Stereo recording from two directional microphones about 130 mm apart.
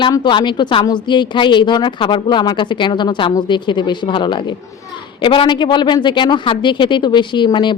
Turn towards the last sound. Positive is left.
turn(degrees=35)  # may be behind; listen again after turning